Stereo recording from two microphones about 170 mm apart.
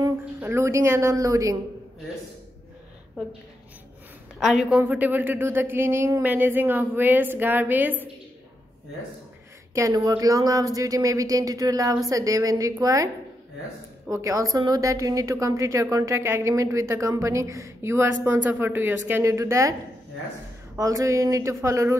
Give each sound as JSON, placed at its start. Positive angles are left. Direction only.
{"t": 0.4, "sound": "a woman's voice", "side_deg": -15}
{"t": 4.4, "sound": "a woman's voice", "side_deg": -5}
{"t": 9.8, "sound": "a woman's voice", "side_deg": -20}
{"t": 14.1, "sound": "a woman's voice", "side_deg": -20}
{"t": 20.7, "sound": "a woman's voice", "side_deg": -20}